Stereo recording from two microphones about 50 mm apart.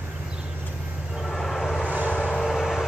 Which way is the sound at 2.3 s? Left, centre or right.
Centre.